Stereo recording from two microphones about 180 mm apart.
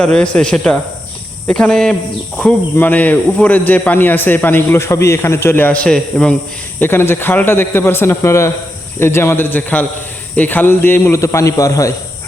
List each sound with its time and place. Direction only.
0.0 s speech: 5° left (ahead or behind)